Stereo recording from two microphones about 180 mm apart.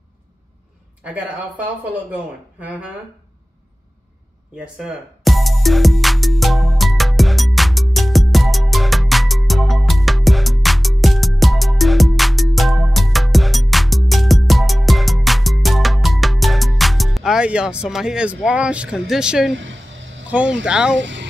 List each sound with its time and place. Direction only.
1.0 s speech: 10° right (ahead or behind)
4.7 s music: centre (ahead or behind)
19.5 s vehicle: 90° right
20.2 s speech: 10° right (ahead or behind)
21.0 s speech: 90° right